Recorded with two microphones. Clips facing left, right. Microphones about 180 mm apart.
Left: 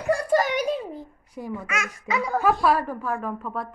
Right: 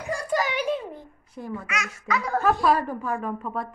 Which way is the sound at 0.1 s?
55° left (ahead or behind).